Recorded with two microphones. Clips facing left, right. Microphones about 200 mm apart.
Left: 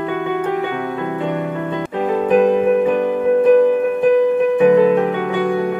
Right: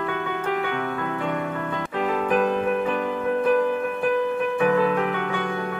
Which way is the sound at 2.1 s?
20° left (ahead or behind).